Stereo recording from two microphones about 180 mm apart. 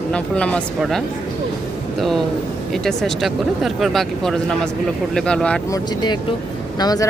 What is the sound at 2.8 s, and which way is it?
Speech, centre (ahead or behind).